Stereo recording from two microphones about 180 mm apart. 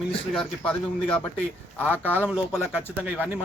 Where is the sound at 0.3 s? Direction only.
5° left (ahead or behind).